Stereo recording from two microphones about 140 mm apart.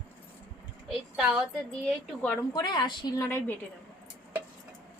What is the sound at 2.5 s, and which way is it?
Speech, 30° left (ahead or behind).